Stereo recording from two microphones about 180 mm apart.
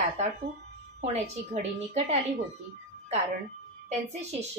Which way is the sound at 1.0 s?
35° right (ahead or behind).